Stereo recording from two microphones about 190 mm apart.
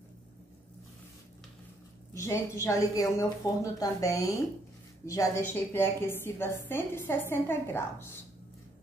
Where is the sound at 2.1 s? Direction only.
15° left (ahead or behind).